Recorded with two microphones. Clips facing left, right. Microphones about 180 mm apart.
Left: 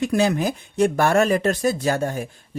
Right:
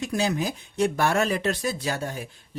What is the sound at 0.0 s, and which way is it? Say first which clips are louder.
Speech: left 6 dB; 60° left (ahead or behind).